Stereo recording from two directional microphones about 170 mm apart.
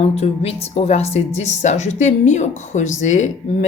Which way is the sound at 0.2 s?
35° left (ahead or behind).